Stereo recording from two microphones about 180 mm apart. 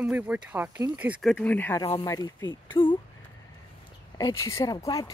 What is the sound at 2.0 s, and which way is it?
Speech, 20° left (ahead or behind).